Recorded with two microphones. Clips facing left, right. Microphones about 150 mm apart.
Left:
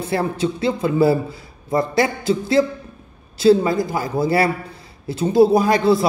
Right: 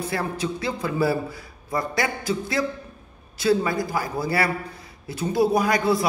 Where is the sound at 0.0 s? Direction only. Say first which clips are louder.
Left 6 dB; 25° left (ahead or behind).